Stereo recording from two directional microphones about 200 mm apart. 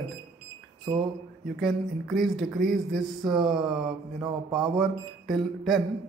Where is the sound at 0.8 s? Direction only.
20° right (ahead or behind).